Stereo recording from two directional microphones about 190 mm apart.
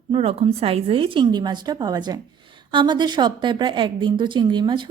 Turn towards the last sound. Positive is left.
turn(degrees=-25)  # may be behind; listen again after turning